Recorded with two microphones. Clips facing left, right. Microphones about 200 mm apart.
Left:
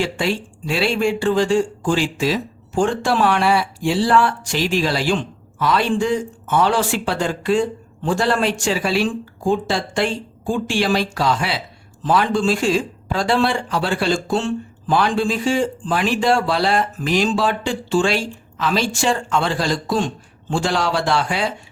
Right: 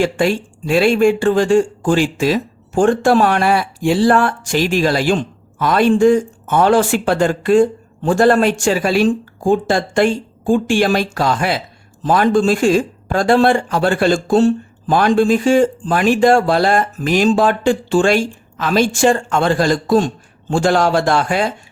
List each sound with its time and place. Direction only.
0.0 s speech: 50° right (ahead or behind)